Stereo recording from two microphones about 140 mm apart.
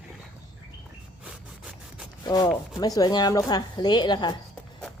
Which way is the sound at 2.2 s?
25° left (ahead or behind).